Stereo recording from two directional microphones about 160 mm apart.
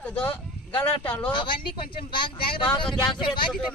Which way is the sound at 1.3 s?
30° left (ahead or behind).